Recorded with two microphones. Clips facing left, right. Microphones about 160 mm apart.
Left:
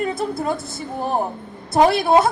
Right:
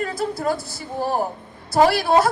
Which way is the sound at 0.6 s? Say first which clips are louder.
Left 3 dB; 35° right (ahead or behind).